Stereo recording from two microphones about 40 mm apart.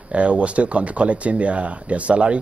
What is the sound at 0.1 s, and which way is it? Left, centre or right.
Speech, right.